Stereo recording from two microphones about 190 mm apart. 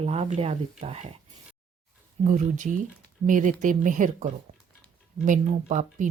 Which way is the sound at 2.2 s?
40° right (ahead or behind).